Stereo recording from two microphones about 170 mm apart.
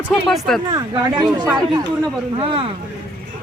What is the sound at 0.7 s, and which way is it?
Speech, 25° right (ahead or behind).